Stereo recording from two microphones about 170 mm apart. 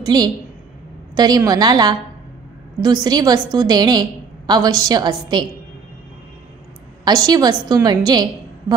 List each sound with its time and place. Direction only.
0.0 s a woman's voice: 25° right (ahead or behind)
7.1 s a woman's voice: 20° right (ahead or behind)